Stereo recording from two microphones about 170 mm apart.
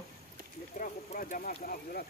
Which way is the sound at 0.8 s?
55° left (ahead or behind).